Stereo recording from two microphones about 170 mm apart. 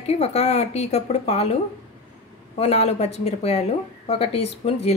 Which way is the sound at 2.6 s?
40° left (ahead or behind).